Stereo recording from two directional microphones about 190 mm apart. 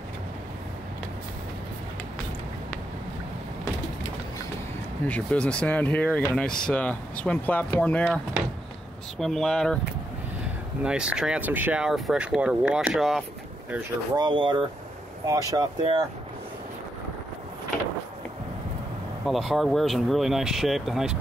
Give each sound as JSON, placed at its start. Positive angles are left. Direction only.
{"t": 5.0, "sound": "speech", "side_deg": 10}
{"t": 9.2, "sound": "speech", "side_deg": 5}
{"t": 10.8, "sound": "speech", "side_deg": -5}
{"t": 14.1, "sound": "speech", "side_deg": -25}
{"t": 19.2, "sound": "speech", "side_deg": 0}